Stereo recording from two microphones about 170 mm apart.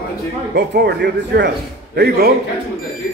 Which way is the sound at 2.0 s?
70° right (ahead or behind).